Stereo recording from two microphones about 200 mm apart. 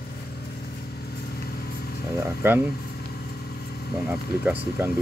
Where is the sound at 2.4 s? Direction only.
10° right (ahead or behind).